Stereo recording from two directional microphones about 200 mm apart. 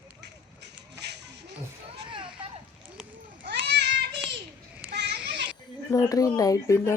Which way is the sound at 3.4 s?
60° right (ahead or behind).